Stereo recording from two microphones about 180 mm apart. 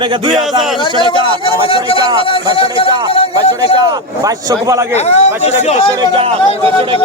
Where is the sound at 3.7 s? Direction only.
20° right (ahead or behind).